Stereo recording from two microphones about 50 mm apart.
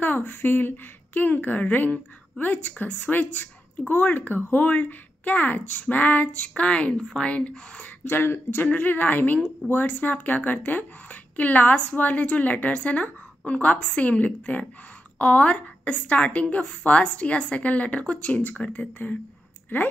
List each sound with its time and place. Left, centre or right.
0.0 s speech: left
8.0 s speech: left
8.6 s a woman's voice: left